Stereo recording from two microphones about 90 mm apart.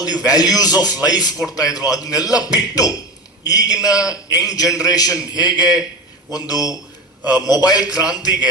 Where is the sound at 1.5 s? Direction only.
40° left (ahead or behind).